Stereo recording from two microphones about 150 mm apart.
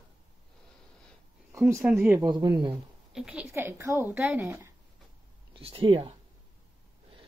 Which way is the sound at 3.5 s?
15° right (ahead or behind).